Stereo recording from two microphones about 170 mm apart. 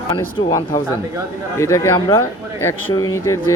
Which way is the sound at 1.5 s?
15° left (ahead or behind).